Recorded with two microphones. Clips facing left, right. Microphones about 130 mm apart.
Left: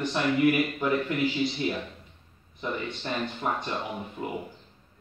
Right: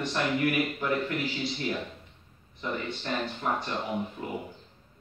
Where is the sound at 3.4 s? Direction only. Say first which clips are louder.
Even; 10° left (ahead or behind).